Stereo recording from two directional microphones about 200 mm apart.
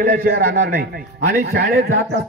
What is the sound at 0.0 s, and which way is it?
Speech, 50° right (ahead or behind).